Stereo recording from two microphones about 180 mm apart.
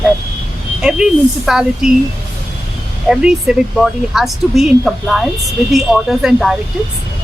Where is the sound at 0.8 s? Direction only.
5° right (ahead or behind).